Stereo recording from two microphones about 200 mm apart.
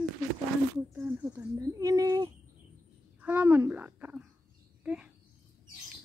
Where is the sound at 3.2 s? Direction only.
5° right (ahead or behind).